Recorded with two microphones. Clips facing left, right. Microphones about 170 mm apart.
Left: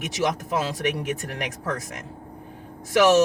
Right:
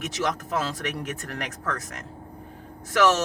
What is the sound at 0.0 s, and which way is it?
Speech, 15° left (ahead or behind).